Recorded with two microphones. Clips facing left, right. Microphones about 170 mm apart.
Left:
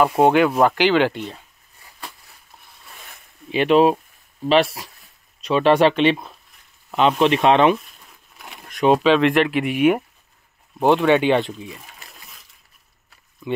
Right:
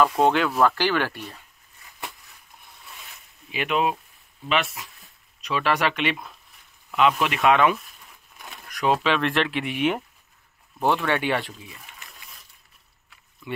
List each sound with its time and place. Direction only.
0.2 s speech: 10° left (ahead or behind)
3.4 s speech: 30° left (ahead or behind); by 10.0 s 5° left (ahead or behind)
10.8 s speech: 20° left (ahead or behind)